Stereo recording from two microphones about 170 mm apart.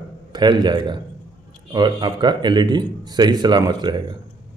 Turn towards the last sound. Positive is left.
turn(degrees=-25)  # may be behind; listen again after turning